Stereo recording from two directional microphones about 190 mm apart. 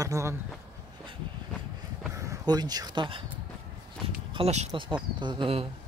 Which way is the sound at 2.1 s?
15° right (ahead or behind).